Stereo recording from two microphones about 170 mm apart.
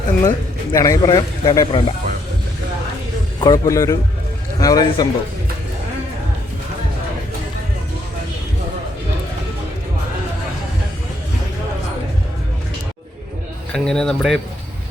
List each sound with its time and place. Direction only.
0.2 s speech: 20° left (ahead or behind)
3.4 s speech: 20° left (ahead or behind)
13.7 s speech: 5° left (ahead or behind)